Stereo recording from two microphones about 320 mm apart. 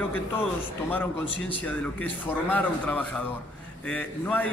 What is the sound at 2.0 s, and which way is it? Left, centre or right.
A man's voice, centre.